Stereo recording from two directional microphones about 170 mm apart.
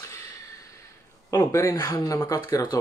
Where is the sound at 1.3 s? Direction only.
15° left (ahead or behind).